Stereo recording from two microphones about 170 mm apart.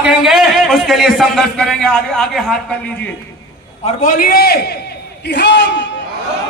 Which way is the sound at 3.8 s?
45° left (ahead or behind).